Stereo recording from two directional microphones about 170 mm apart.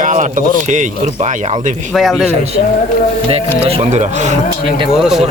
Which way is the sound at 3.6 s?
40° right (ahead or behind).